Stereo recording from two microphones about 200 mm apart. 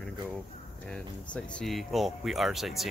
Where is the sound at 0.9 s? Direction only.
5° left (ahead or behind).